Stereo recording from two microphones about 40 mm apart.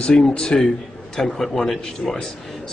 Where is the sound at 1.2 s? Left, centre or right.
Centre.